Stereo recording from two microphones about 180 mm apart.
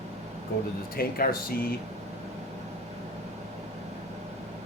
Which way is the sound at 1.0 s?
55° left (ahead or behind).